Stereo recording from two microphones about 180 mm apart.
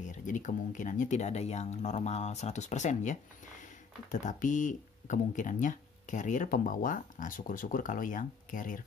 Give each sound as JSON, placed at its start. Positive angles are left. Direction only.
{"t": 0.0, "sound": "speech", "side_deg": 45}